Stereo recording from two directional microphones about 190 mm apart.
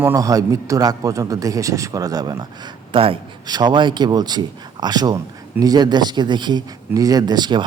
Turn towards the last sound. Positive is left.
turn(degrees=-20)  # may be behind; listen again after turning